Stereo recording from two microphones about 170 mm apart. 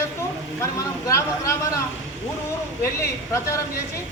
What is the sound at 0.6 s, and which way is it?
Speech, 15° left (ahead or behind).